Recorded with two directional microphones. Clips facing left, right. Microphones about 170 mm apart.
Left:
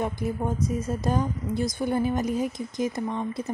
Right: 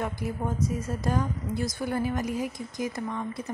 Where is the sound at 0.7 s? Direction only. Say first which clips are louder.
Left 3 dB; 20° left (ahead or behind).